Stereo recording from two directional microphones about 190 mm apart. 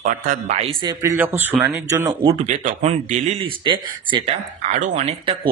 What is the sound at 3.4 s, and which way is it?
Speech, 25° right (ahead or behind).